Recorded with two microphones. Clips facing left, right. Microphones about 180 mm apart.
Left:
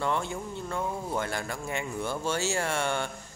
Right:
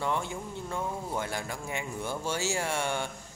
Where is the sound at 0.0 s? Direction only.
15° right (ahead or behind).